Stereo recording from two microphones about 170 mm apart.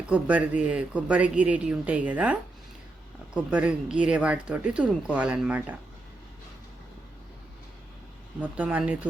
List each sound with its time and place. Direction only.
0.1 s speech: 10° right (ahead or behind)
8.4 s speech: 10° right (ahead or behind)